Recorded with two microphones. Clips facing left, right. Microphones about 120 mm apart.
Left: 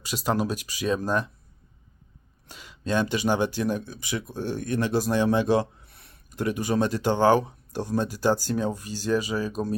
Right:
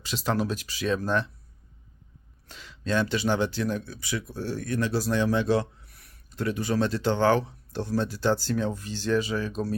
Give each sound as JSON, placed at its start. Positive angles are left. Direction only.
{"t": 0.0, "sound": "speech", "side_deg": 10}
{"t": 2.5, "sound": "speech", "side_deg": 15}
{"t": 6.3, "sound": "speech", "side_deg": 15}